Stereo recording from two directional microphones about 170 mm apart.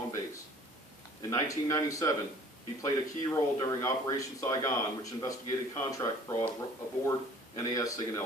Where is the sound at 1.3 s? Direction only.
20° left (ahead or behind).